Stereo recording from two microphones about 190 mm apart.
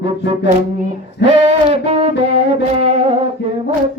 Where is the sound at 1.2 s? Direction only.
65° left (ahead or behind).